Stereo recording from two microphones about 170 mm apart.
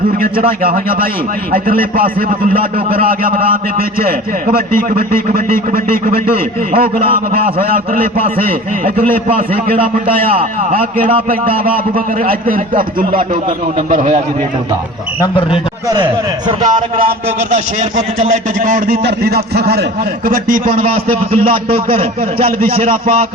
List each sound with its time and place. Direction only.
0.2 s a man's voice: 60° right (ahead or behind)
9.1 s a man's voice: 55° right (ahead or behind)
9.7 s a man's voice: 30° right (ahead or behind)
10.2 s a man's voice: 55° right (ahead or behind)
16.6 s a man's voice: 55° right (ahead or behind)
19.0 s a man's voice: 70° right (ahead or behind)
20.2 s a man's voice: 55° right (ahead or behind)
21.1 s a man's voice: 30° right (ahead or behind)
22.4 s a man's voice: 60° right (ahead or behind)